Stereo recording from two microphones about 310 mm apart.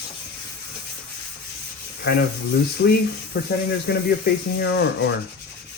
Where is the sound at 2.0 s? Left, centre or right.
Left.